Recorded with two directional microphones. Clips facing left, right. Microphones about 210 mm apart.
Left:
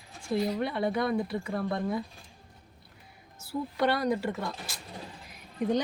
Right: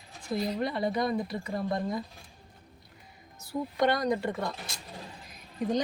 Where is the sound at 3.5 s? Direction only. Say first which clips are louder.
Right 1 dB; 5° left (ahead or behind).